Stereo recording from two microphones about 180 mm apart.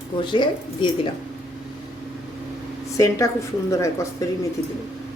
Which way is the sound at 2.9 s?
15° left (ahead or behind).